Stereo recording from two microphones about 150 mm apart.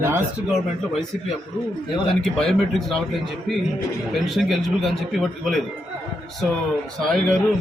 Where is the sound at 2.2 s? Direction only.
Centre (ahead or behind).